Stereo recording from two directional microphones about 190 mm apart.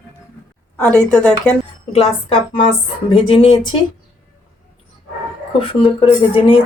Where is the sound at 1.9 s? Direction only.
30° left (ahead or behind).